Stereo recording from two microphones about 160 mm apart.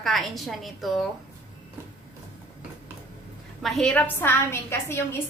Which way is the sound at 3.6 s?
Centre (ahead or behind).